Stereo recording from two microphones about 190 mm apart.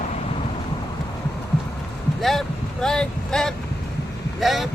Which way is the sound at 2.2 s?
Centre (ahead or behind).